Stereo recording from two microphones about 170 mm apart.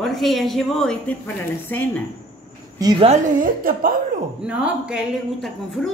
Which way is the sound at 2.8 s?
25° right (ahead or behind).